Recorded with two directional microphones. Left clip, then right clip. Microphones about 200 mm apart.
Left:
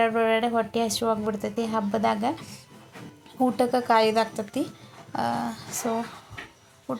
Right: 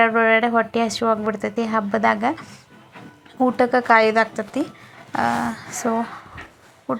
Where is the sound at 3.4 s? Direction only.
15° right (ahead or behind).